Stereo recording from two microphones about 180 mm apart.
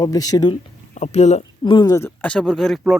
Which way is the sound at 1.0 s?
40° left (ahead or behind).